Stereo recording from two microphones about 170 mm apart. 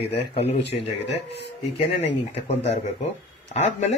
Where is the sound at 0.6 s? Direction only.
90° left.